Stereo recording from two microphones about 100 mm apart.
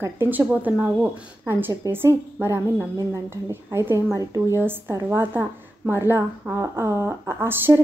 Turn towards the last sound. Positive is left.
turn(degrees=-25)  # may be behind; listen again after turning